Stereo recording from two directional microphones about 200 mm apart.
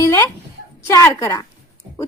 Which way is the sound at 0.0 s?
15° left (ahead or behind).